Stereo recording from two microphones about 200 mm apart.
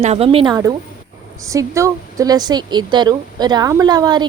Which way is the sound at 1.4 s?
15° right (ahead or behind).